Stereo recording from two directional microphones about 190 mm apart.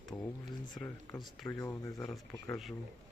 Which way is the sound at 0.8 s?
Centre (ahead or behind).